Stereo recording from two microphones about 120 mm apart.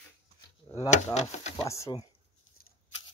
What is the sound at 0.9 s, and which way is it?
Speech, 70° left (ahead or behind).